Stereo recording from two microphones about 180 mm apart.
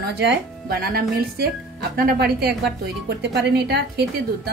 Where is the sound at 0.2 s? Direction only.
65° right (ahead or behind).